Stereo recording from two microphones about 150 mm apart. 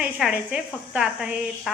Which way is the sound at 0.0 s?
5° right (ahead or behind).